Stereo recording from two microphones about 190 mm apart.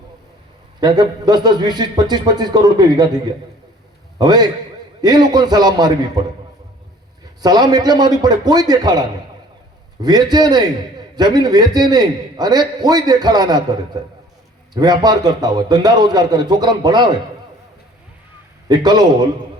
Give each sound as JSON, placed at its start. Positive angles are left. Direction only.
{"t": 0.8, "sound": "a man's voice", "side_deg": -20}
{"t": 4.2, "sound": "a man's voice", "side_deg": -20}
{"t": 7.4, "sound": "a man's voice", "side_deg": -20}
{"t": 18.7, "sound": "a man's voice", "side_deg": -20}